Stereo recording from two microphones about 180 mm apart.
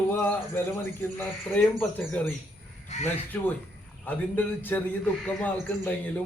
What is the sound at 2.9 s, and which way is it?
Speech, 40° left (ahead or behind).